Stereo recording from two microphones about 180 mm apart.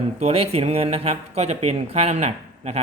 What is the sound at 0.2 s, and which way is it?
Speech, 35° right (ahead or behind).